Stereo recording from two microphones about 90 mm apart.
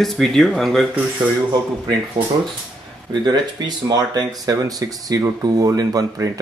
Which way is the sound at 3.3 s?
50° right (ahead or behind).